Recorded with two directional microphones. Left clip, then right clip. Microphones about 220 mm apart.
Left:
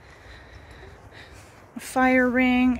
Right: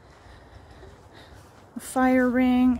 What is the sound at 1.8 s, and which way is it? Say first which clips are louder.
Speech: left 2 dB; 15° right (ahead or behind).